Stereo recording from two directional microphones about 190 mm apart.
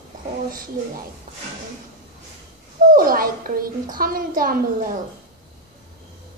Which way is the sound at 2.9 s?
50° right (ahead or behind).